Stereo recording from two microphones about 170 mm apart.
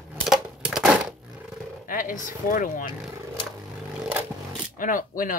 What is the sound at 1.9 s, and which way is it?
Speech, 55° left (ahead or behind).